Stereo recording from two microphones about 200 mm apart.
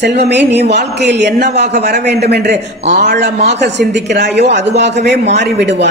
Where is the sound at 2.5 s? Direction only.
35° right (ahead or behind).